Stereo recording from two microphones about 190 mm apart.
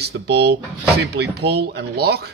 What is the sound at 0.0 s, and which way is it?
A man's voice, 60° right (ahead or behind).